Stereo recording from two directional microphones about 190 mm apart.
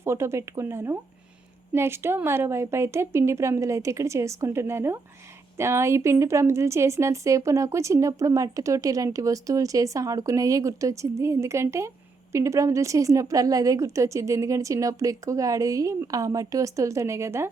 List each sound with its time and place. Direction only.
0.0 s a woman's voice: 15° right (ahead or behind)